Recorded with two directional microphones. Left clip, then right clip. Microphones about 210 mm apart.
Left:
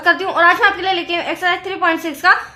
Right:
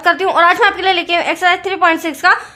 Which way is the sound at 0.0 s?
35° right (ahead or behind).